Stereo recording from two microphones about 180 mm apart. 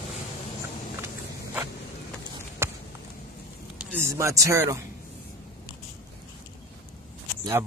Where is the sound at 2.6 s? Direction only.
15° right (ahead or behind).